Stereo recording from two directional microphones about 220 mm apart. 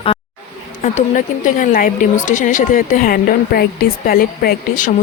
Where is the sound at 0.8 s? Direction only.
35° left (ahead or behind).